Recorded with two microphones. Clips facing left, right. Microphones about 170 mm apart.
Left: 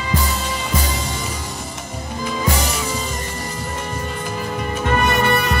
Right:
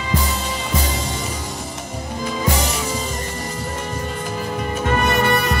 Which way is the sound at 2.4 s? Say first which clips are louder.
Right 1 dB; 20° right (ahead or behind).